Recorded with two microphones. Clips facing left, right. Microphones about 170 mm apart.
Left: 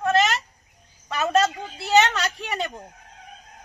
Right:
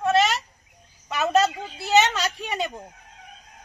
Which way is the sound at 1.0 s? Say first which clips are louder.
Even; centre (ahead or behind).